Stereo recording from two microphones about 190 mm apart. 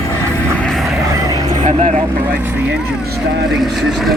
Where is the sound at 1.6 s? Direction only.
35° right (ahead or behind).